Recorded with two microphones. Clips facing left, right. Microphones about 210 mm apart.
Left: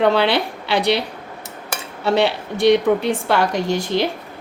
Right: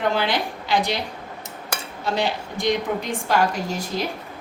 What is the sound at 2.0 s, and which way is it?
A woman's voice, 65° left (ahead or behind).